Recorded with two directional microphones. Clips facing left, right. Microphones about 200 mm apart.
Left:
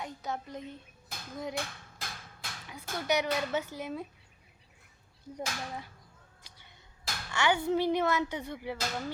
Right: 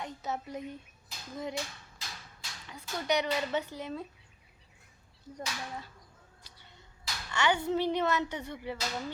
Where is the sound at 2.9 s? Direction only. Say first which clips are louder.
Even; 55° left (ahead or behind).